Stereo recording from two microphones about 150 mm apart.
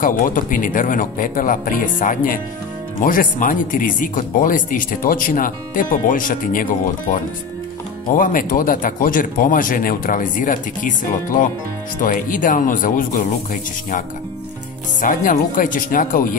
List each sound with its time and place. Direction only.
0.0 s speech: 65° left (ahead or behind)
8.2 s speech: 65° left (ahead or behind)